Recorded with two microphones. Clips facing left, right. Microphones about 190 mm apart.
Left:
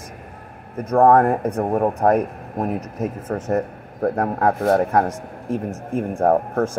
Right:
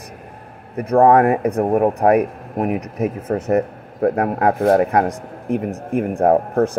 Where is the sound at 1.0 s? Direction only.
10° right (ahead or behind).